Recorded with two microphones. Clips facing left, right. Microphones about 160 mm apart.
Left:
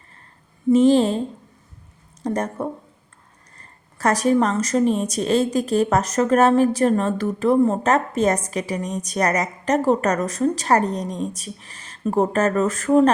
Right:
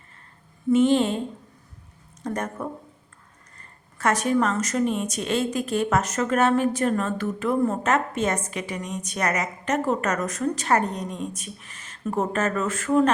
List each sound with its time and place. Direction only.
0.7 s speech: 35° left (ahead or behind)
2.2 s speech: 35° left (ahead or behind)